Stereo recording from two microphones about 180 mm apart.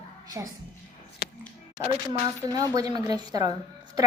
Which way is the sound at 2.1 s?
20° right (ahead or behind).